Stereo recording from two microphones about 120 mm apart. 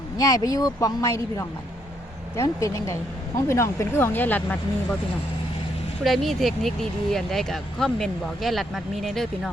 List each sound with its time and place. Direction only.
0.2 s speech: 30° left (ahead or behind); by 4.9 s 15° left (ahead or behind)
6.1 s speech: centre (ahead or behind)